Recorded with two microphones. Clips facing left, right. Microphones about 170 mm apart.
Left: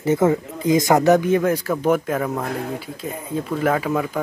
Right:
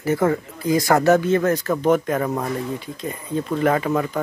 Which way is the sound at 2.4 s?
65° left (ahead or behind).